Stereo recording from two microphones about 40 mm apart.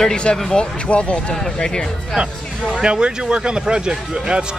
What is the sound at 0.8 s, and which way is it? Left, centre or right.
Speech, left.